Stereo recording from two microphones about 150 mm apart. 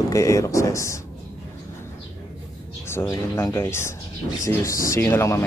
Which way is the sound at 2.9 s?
15° left (ahead or behind).